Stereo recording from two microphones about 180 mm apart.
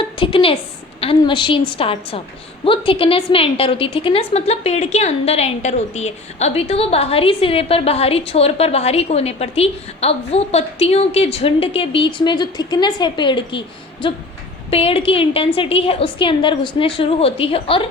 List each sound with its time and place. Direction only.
0.2 s a woman's voice: 30° left (ahead or behind)